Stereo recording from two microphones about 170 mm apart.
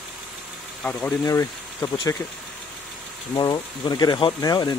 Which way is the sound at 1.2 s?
20° left (ahead or behind).